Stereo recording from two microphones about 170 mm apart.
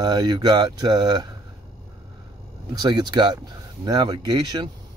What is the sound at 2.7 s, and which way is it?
Speech, 25° right (ahead or behind).